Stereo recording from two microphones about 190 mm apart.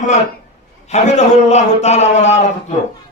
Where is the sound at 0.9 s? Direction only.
35° left (ahead or behind).